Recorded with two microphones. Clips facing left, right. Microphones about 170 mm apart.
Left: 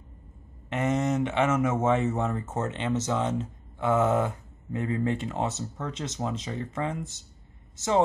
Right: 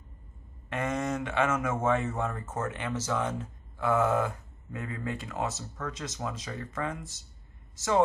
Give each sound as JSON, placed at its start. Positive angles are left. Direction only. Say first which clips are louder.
{"t": 0.7, "sound": "speech", "louder": "left 5 dB", "side_deg": 25}